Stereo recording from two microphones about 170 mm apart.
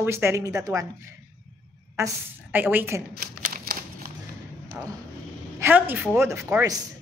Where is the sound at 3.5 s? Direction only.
60° right (ahead or behind).